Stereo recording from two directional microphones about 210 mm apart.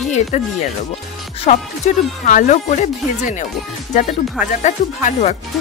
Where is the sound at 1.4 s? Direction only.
35° left (ahead or behind).